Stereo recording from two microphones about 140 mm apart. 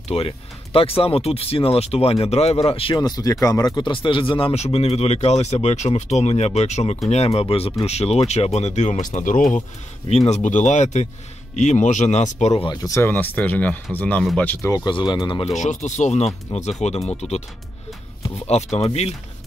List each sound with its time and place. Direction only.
0.1 s speech: 40° left (ahead or behind)
3.0 s speech: 30° left (ahead or behind); by 9.6 s 70° left (ahead or behind)
10.0 s speech: 50° left (ahead or behind)
12.8 s speech: 20° left (ahead or behind)
14.9 s speech: 35° left (ahead or behind)
15.5 s speech: 55° left (ahead or behind)
18.5 s speech: 50° left (ahead or behind)